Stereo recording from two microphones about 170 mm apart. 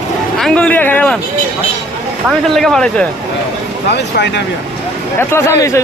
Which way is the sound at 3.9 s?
85° left.